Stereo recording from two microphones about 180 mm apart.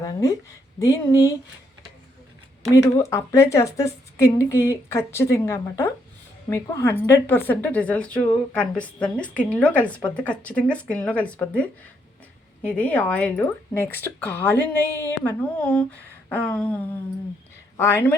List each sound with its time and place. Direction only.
0.0 s speech: 20° left (ahead or behind)
2.7 s speech: 15° left (ahead or behind)